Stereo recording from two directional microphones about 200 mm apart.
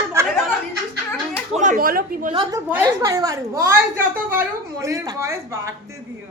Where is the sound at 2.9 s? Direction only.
15° right (ahead or behind).